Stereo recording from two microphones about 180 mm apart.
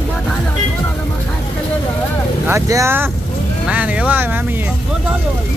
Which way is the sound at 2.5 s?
15° right (ahead or behind).